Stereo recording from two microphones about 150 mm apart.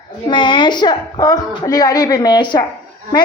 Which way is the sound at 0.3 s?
30° left (ahead or behind).